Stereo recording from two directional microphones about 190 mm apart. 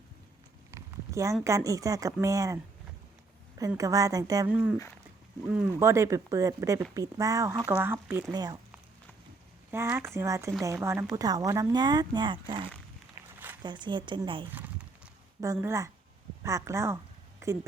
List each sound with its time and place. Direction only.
0.7 s a sound: 15° right (ahead or behind)
1.5 s speech: 15° right (ahead or behind)
3.8 s speech: 15° right (ahead or behind)
4.4 s speech: 5° right (ahead or behind)
9.7 s speech: 15° right (ahead or behind)
13.2 s a sound: 15° right (ahead or behind)
13.6 s speech: 25° right (ahead or behind)
14.5 s a sound: 10° right (ahead or behind)
15.6 s speech: 15° right (ahead or behind)